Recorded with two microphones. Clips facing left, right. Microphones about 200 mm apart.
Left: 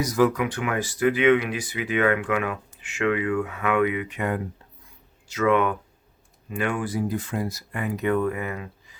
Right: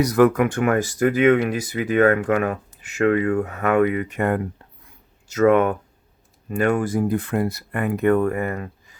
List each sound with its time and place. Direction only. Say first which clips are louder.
0.0 s speech: right 5 dB; 60° right (ahead or behind)